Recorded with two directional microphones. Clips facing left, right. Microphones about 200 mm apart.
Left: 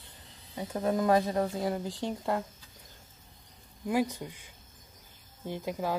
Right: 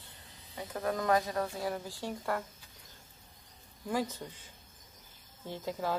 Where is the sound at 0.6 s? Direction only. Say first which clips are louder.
Left 5 dB; 25° left (ahead or behind).